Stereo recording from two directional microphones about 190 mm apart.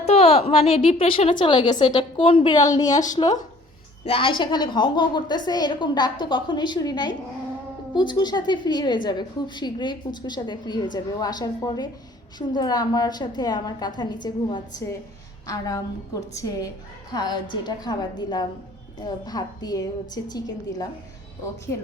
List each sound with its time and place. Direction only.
0.1 s a woman's voice: 30° left (ahead or behind)